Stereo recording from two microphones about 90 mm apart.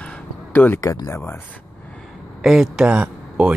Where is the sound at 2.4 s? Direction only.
5° right (ahead or behind).